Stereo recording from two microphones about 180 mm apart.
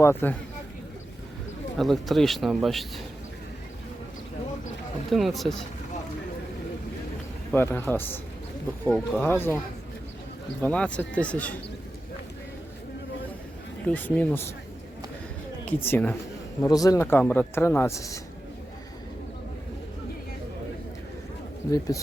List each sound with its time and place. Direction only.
0.0 s speech: 10° left (ahead or behind)
1.8 s speech: centre (ahead or behind)
5.1 s speech: centre (ahead or behind)
7.5 s speech: 10° left (ahead or behind)
10.6 s speech: 5° left (ahead or behind)
13.8 s speech: 10° left (ahead or behind)
15.6 s a man's voice: 10° left (ahead or behind)
21.7 s a man's voice: 20° left (ahead or behind)